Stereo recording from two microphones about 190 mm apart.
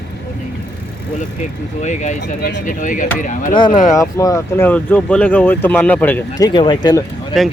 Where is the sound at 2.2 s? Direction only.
60° left (ahead or behind).